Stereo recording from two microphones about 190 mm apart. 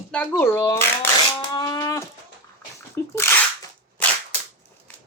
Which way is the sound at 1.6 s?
20° left (ahead or behind).